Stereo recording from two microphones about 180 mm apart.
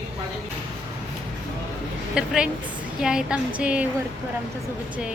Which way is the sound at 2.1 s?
5° right (ahead or behind).